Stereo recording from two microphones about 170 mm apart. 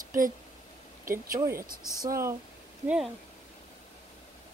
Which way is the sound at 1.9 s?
20° right (ahead or behind).